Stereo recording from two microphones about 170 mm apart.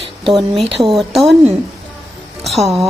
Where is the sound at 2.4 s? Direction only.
Centre (ahead or behind).